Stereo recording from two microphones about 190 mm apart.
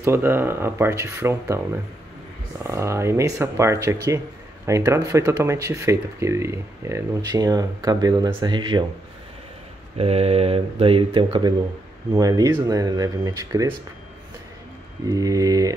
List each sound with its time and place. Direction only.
0.0 s speech: 10° right (ahead or behind)
2.6 s speech: 15° right (ahead or behind)
9.9 s speech: 30° right (ahead or behind)
15.0 s speech: 15° right (ahead or behind)